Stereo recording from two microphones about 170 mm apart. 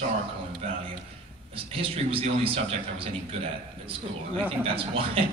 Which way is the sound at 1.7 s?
35° right (ahead or behind).